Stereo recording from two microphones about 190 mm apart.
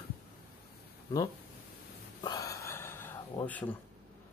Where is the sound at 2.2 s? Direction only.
15° left (ahead or behind).